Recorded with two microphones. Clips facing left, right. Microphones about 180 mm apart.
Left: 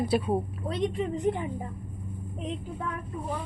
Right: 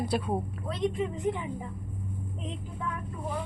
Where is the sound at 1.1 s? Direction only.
40° left (ahead or behind).